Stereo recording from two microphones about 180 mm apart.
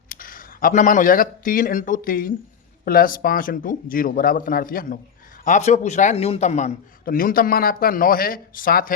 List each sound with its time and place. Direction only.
0.1 s speech: 50° left (ahead or behind)
5.5 s a man's voice: 40° left (ahead or behind)
7.0 s speech: 50° left (ahead or behind)